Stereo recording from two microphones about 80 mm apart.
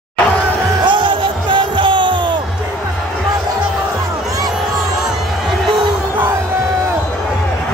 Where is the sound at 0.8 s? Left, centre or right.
Right.